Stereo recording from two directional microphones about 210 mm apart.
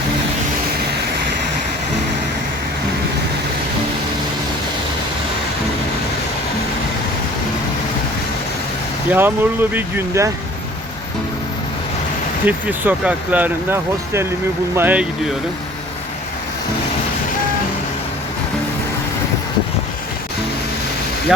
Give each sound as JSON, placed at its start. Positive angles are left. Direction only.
{"t": 9.0, "sound": "speech", "side_deg": -10}
{"t": 12.5, "sound": "speech", "side_deg": -10}